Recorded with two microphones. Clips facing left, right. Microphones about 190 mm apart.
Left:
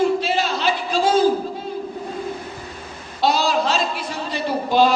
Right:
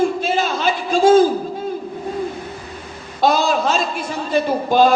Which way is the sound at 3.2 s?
50° right (ahead or behind).